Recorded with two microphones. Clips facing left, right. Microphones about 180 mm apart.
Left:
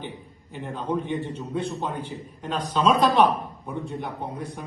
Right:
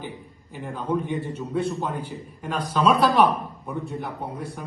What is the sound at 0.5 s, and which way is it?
A man's voice, centre (ahead or behind).